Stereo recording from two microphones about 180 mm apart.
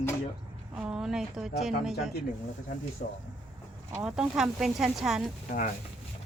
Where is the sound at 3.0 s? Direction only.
55° left (ahead or behind).